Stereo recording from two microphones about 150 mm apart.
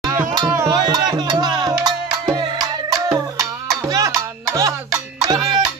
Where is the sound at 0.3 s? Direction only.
25° right (ahead or behind).